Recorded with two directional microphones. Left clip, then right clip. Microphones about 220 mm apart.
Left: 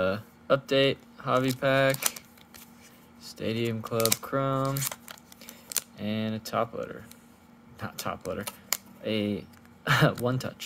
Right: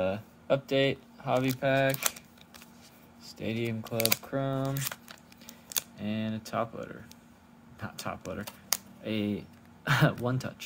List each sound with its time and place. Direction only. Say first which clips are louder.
0.0 s speech: left 3 dB; 20° left (ahead or behind)
3.2 s typing: left 3 dB; 20° left (ahead or behind)
4.2 s a sound: left 5 dB; 25° left (ahead or behind)
5.9 s speech: left 3 dB; 20° left (ahead or behind)